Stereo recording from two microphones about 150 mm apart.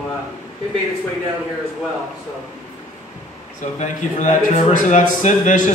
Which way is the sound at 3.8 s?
55° left (ahead or behind).